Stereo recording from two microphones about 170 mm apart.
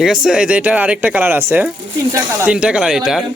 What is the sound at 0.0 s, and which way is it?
A man's voice, centre (ahead or behind).